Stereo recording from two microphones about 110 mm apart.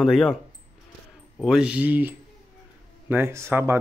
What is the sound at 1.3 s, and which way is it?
Speech, 5° right (ahead or behind).